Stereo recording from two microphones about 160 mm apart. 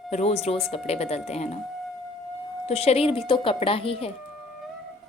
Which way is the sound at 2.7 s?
40° left (ahead or behind).